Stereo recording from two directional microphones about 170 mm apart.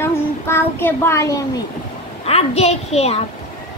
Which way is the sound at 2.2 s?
35° left (ahead or behind).